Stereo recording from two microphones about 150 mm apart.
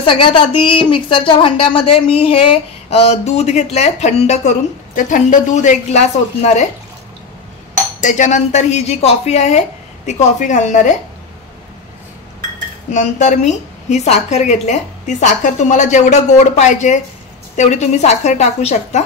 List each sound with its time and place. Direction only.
0.0 s a woman's voice: 35° left (ahead or behind)
8.0 s a woman's voice: 55° left (ahead or behind)
12.9 s a woman's voice: 55° left (ahead or behind)